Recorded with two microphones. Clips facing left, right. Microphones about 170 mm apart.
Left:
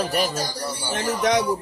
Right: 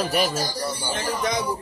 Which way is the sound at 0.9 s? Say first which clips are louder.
Left 6 dB; 75° left (ahead or behind).